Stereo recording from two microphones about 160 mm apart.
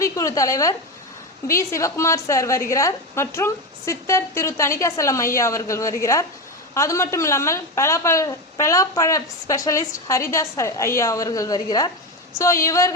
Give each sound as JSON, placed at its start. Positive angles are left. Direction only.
{"t": 0.0, "sound": "a woman's voice", "side_deg": 20}